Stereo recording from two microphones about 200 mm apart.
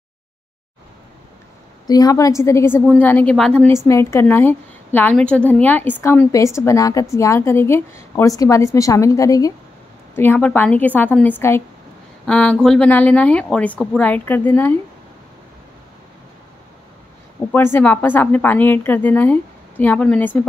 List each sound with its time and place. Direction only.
1.9 s a woman's voice: 20° left (ahead or behind)
17.5 s a woman's voice: 10° left (ahead or behind)